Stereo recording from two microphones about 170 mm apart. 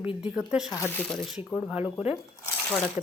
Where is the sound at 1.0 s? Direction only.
5° left (ahead or behind).